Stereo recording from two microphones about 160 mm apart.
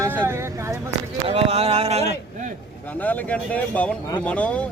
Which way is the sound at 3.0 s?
10° left (ahead or behind).